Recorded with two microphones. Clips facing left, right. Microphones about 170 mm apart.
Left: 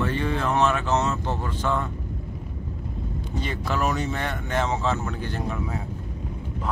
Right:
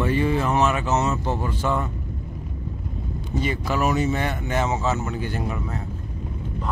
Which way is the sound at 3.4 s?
5° right (ahead or behind).